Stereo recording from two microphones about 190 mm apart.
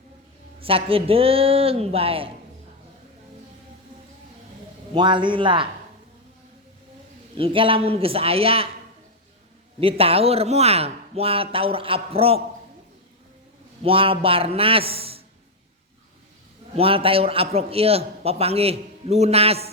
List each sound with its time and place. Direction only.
0.6 s a man's voice: 30° right (ahead or behind)
4.9 s a man's voice: 25° right (ahead or behind)
7.3 s a man's voice: 30° right (ahead or behind)
9.8 s a man's voice: 30° right (ahead or behind)
13.8 s a man's voice: 30° right (ahead or behind)
16.7 s a man's voice: 30° right (ahead or behind)